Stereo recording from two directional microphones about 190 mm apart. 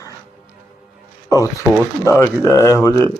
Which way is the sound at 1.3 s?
15° left (ahead or behind).